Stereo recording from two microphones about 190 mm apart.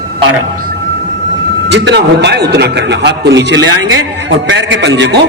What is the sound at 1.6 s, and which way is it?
A man's voice, 65° right (ahead or behind).